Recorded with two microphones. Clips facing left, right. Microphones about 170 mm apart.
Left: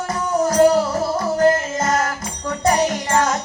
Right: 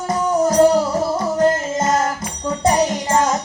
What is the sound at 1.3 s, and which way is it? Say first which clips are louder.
Music: left 1 dB; 25° right (ahead or behind).